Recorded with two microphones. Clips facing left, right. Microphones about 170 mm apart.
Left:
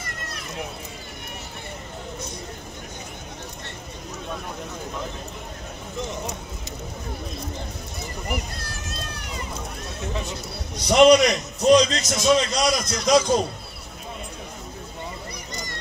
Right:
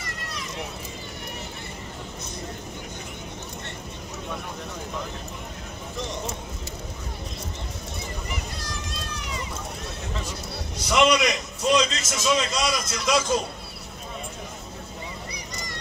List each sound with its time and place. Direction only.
10.9 s a man's voice: 40° left (ahead or behind)